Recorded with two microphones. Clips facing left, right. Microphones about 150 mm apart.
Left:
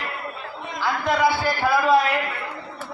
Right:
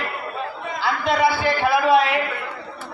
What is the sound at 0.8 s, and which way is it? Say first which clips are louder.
Speech: right 1 dB; 70° right (ahead or behind).